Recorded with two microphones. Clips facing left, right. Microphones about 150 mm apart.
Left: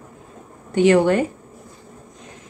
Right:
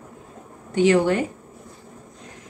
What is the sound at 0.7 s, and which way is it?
Speech, 60° left (ahead or behind).